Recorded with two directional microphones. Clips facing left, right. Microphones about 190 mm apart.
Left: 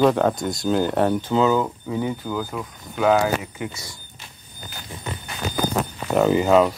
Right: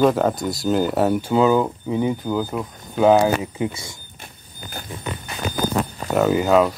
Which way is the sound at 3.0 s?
25° right (ahead or behind).